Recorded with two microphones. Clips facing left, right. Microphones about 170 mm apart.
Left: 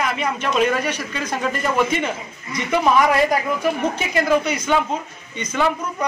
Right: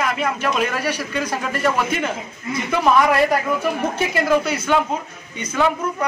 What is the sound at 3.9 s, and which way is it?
A man's voice, 5° right (ahead or behind).